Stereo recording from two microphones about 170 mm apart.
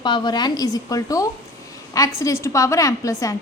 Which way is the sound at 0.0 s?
25° left (ahead or behind).